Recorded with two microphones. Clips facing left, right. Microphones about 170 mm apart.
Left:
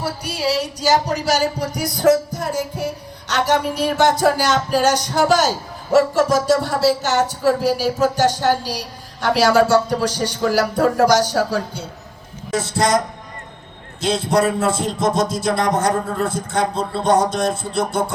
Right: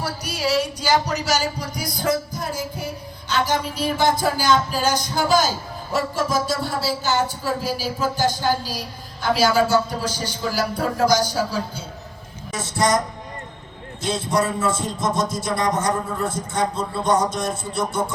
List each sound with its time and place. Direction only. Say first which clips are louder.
0.0 s a man's voice: left 3 dB; 30° left (ahead or behind); by 11.9 s 70° left (ahead or behind)
14.3 s a man's voice: left 4 dB; 70° left (ahead or behind)